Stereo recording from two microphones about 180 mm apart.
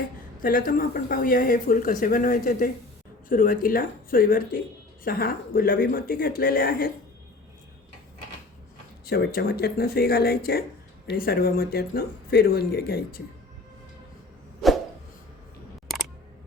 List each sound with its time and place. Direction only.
0.3 s speech: 50° left (ahead or behind)
9.0 s speech: 60° left (ahead or behind)